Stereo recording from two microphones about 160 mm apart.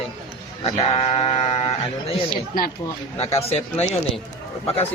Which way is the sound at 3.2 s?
40° left (ahead or behind).